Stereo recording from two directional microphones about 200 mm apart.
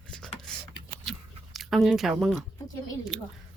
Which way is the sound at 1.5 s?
Centre (ahead or behind).